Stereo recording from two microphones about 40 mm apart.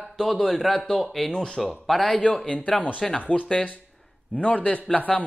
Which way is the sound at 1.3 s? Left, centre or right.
Centre.